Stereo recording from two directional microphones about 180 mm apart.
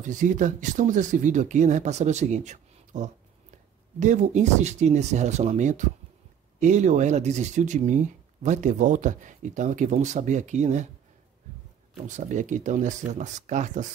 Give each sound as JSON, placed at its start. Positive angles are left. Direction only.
{"t": 0.0, "sound": "speech", "side_deg": -45}
{"t": 12.1, "sound": "speech", "side_deg": -45}